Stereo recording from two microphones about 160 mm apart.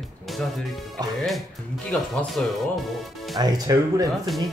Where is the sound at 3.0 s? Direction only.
Centre (ahead or behind).